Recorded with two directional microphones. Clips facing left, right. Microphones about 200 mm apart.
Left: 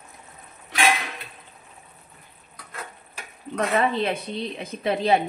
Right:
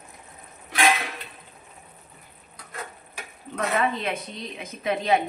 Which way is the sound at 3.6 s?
30° left (ahead or behind).